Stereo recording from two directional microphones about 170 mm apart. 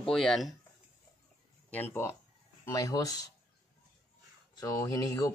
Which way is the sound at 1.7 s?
10° left (ahead or behind).